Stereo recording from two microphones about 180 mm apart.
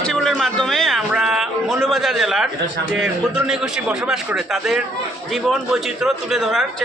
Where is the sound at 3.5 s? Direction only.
5° right (ahead or behind).